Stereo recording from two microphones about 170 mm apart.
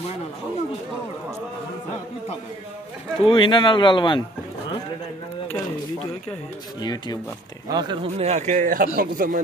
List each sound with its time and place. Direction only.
3.2 s speech: 30° left (ahead or behind)
6.8 s speech: 25° left (ahead or behind)
7.7 s speech: 30° right (ahead or behind); by 9.4 s 55° right (ahead or behind)